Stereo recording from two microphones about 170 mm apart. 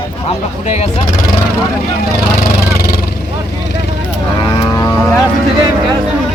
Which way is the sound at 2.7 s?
60° left (ahead or behind).